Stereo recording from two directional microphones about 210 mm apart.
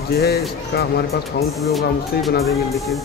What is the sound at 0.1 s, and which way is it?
Speech, 50° left (ahead or behind).